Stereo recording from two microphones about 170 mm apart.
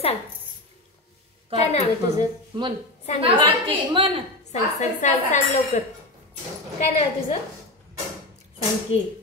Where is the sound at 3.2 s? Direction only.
30° right (ahead or behind).